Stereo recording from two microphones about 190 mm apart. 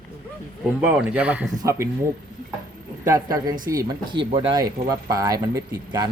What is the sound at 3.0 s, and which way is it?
Speech, 15° right (ahead or behind).